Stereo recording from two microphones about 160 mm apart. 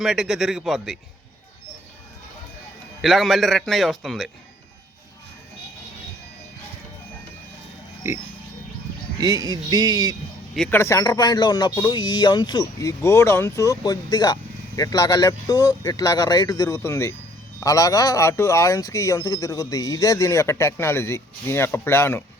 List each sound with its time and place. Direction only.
0.0 s a man's voice: centre (ahead or behind)
3.0 s a man's voice: centre (ahead or behind)
8.0 s speech: 15° right (ahead or behind)
9.2 s a sound: 25° right (ahead or behind)
10.7 s speech: 15° left (ahead or behind)